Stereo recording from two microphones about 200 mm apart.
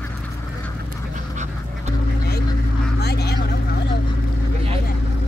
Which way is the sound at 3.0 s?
55° left (ahead or behind).